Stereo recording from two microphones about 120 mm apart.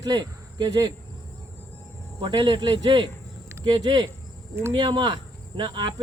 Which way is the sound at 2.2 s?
40° right (ahead or behind).